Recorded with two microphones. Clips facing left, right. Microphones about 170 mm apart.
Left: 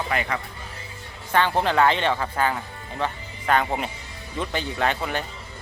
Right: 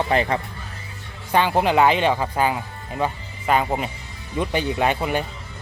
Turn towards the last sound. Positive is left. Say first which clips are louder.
# right 4 dB
turn(degrees=-15)  # may be behind; listen again after turning